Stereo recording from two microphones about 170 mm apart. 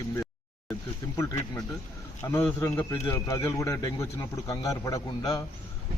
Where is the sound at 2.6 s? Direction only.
15° left (ahead or behind).